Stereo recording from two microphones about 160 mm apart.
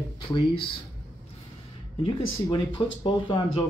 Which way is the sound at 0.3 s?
35° left (ahead or behind).